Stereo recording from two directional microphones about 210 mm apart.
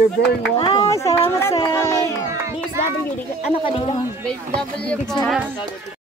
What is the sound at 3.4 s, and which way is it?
Speech, 25° left (ahead or behind).